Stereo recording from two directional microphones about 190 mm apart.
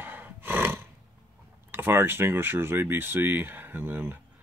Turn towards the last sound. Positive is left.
turn(degrees=-10)  # may be behind; listen again after turning